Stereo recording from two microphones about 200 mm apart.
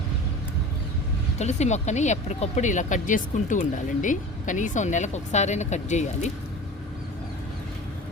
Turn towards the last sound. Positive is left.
turn(degrees=35)  # may be behind; listen again after turning